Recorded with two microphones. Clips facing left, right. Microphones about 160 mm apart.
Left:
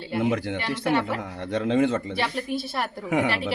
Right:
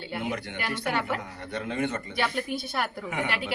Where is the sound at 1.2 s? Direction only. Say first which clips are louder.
Left 7 dB; 90° left.